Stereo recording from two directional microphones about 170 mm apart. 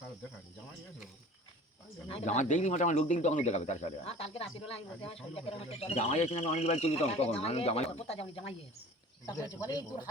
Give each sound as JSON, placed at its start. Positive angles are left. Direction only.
{"t": 2.0, "sound": "speech", "side_deg": 40}
{"t": 9.2, "sound": "speech", "side_deg": 20}